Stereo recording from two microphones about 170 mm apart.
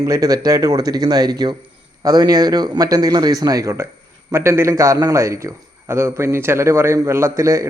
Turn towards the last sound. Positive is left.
turn(degrees=-15)  # may be behind; listen again after turning